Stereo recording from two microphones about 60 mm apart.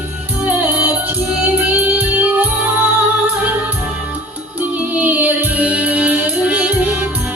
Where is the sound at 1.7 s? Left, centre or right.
Right.